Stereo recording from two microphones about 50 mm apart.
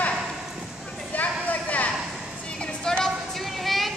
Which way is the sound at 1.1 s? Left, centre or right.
Left.